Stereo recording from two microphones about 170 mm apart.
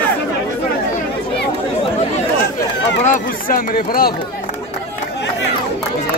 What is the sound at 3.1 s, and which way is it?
Speech, 55° left (ahead or behind).